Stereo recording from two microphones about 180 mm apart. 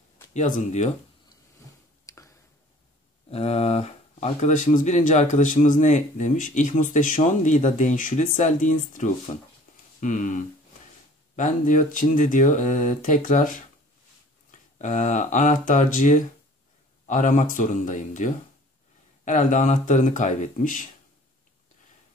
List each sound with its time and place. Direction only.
0.3 s speech: 40° left (ahead or behind)
2.0 s a sound: 15° left (ahead or behind)
3.3 s speech: 35° left (ahead or behind)
14.8 s speech: 45° left (ahead or behind)